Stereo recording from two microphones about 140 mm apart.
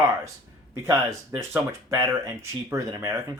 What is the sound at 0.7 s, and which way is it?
Speech, 20° right (ahead or behind).